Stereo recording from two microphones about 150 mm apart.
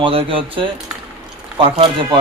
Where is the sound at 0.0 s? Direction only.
35° right (ahead or behind).